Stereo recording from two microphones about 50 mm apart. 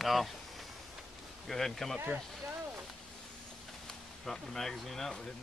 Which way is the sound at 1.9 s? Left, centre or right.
Right.